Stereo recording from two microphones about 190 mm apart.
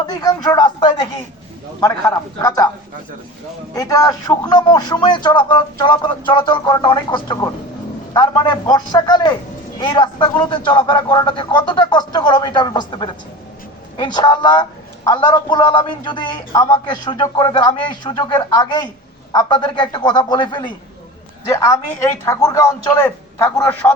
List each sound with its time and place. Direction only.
0.2 s speech: 20° left (ahead or behind)
3.8 s speech: 20° left (ahead or behind)